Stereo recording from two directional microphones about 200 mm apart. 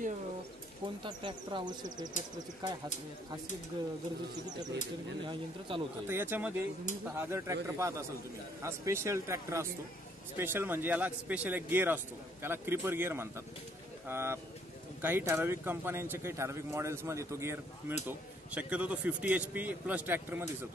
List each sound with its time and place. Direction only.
0.8 s speech: 25° right (ahead or behind)
5.7 s speech: 25° right (ahead or behind)
6.0 s speech: 10° right (ahead or behind)